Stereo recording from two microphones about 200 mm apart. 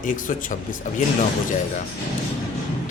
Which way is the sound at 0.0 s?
40° left (ahead or behind).